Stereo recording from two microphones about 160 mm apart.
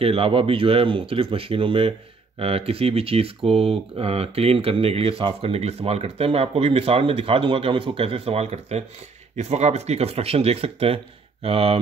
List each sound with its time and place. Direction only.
0.0 s speech: 35° right (ahead or behind)